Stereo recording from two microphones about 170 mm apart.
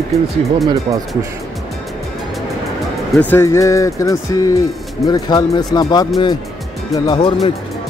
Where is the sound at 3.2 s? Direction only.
10° left (ahead or behind).